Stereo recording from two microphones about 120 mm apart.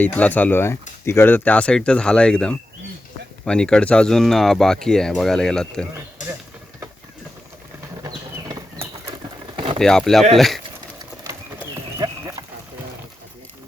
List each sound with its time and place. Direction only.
0.0 s speech: 15° left (ahead or behind)
8.0 s a sound: 30° right (ahead or behind)
9.7 s speech: 5° left (ahead or behind)
11.9 s clip-clop: 35° right (ahead or behind)